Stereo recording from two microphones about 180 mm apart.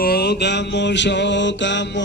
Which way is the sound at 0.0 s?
60° left (ahead or behind).